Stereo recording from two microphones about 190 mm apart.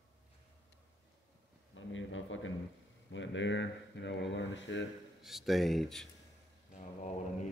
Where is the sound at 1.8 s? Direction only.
90° left.